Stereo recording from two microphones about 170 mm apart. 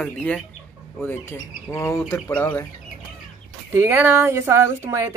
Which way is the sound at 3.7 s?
15° right (ahead or behind).